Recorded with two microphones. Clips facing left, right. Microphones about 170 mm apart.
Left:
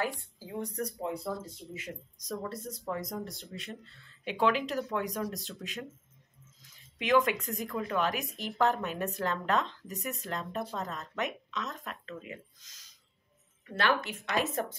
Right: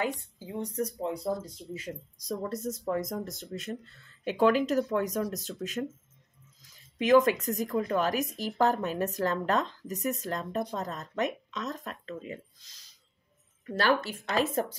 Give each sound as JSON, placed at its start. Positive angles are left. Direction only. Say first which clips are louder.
{"t": 0.0, "sound": "a woman's voice", "louder": "right 2 dB", "side_deg": -20}
{"t": 1.0, "sound": "speech", "louder": "right 4 dB", "side_deg": -35}
{"t": 7.0, "sound": "a woman's voice", "louder": "right 5 dB", "side_deg": -40}